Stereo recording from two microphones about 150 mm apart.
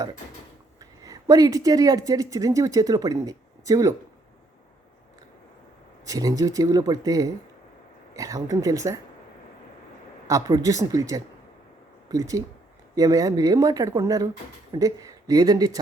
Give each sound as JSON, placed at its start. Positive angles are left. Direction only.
{"t": 0.8, "sound": "speech", "side_deg": -25}
{"t": 6.1, "sound": "speech", "side_deg": -25}
{"t": 10.2, "sound": "speech", "side_deg": -25}